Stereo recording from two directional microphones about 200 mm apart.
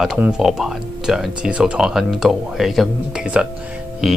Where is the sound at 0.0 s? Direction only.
5° right (ahead or behind).